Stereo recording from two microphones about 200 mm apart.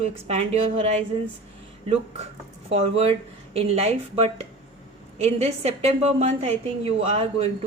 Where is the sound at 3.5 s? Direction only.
30° right (ahead or behind).